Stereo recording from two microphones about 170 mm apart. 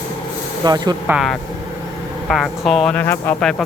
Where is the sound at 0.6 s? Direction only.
25° right (ahead or behind).